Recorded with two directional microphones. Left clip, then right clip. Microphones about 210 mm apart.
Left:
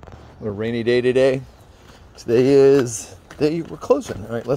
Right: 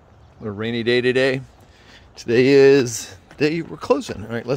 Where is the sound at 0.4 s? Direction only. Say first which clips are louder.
Left 1 dB; 10° right (ahead or behind).